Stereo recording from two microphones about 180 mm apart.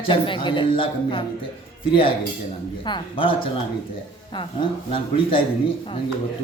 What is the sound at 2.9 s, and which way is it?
Speech, 30° left (ahead or behind).